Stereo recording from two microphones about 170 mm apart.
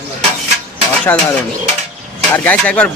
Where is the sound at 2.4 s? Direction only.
5° left (ahead or behind).